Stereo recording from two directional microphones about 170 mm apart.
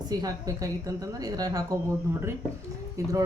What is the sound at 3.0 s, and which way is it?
Speech, 20° right (ahead or behind).